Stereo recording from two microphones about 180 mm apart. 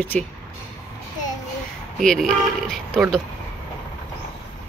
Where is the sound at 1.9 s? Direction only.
Centre (ahead or behind).